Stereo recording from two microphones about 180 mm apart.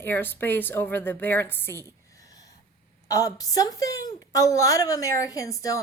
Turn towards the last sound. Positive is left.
turn(degrees=20)  # may be behind; listen again after turning